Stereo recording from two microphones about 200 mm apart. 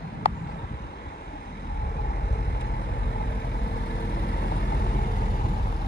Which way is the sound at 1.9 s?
50° left (ahead or behind).